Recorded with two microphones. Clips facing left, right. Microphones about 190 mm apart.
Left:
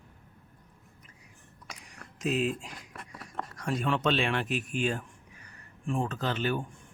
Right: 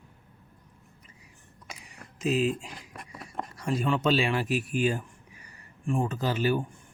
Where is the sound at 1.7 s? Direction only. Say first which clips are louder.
Right 2 dB; 5° right (ahead or behind).